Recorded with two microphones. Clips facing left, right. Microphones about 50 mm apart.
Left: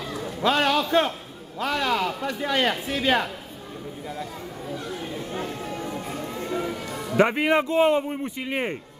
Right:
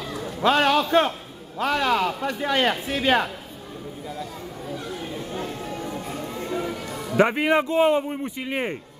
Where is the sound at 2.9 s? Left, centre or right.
Right.